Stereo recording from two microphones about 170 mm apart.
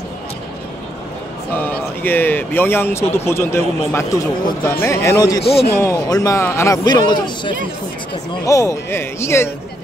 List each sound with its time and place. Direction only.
1.5 s speech: 10° left (ahead or behind)
5.4 s a man's voice: 35° left (ahead or behind)
5.8 s a man's voice: 20° left (ahead or behind)